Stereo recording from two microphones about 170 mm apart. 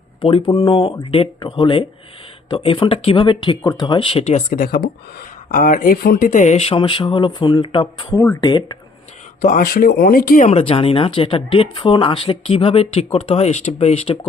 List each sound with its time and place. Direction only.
0.2 s speech: 30° left (ahead or behind)
4.5 s speech: 60° left (ahead or behind); by 8.0 s 30° left (ahead or behind)
8.1 s speech: 15° left (ahead or behind)
9.4 s speech: 50° left (ahead or behind)
10.6 s speech: 35° left (ahead or behind)